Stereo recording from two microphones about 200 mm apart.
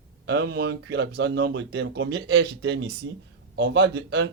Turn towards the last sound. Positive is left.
turn(degrees=-60)  # may be behind; listen again after turning